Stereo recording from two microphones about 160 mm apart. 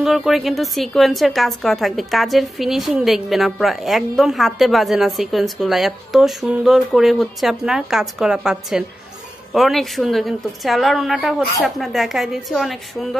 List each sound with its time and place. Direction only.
0.0 s a woman's voice: centre (ahead or behind)